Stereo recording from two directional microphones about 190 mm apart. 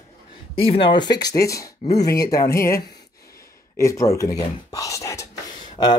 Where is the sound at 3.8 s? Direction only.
15° left (ahead or behind).